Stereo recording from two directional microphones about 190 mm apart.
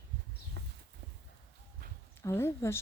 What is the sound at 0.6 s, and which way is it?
Horse, 60° right (ahead or behind).